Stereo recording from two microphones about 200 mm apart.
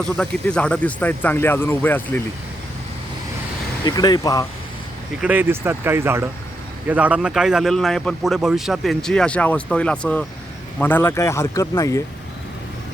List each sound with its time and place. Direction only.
0.0 s speech: 5° left (ahead or behind)
3.8 s speech: 20° left (ahead or behind)
5.2 s a man's voice: 10° right (ahead or behind); by 12.0 s 15° left (ahead or behind)